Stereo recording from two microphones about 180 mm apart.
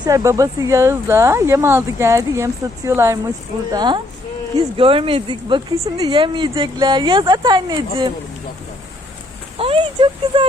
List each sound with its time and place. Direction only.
0.0 s speech: 20° right (ahead or behind)
9.6 s speech: 30° right (ahead or behind)